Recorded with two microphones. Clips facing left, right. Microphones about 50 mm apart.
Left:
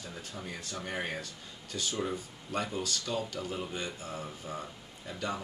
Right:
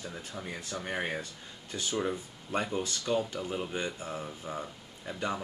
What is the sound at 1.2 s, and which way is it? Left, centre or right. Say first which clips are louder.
Speech: right 1 dB; right.